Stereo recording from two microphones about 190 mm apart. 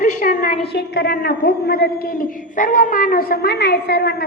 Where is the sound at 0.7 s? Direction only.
60° left (ahead or behind).